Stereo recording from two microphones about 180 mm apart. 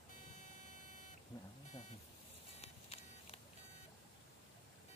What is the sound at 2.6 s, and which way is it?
Music, 35° left (ahead or behind).